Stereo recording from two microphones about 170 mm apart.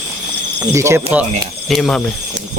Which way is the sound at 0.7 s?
15° right (ahead or behind).